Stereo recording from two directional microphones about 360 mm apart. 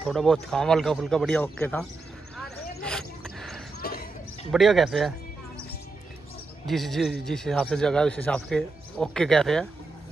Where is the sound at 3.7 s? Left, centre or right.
Left.